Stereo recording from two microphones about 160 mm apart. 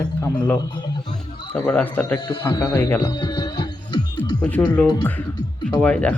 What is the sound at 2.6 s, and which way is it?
Speech, 15° left (ahead or behind).